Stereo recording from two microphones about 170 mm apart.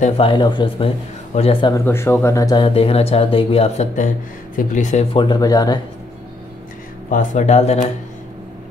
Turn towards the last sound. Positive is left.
turn(degrees=40)  # may be behind; listen again after turning